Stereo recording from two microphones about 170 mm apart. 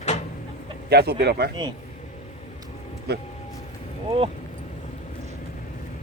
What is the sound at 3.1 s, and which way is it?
Speech, 70° right (ahead or behind).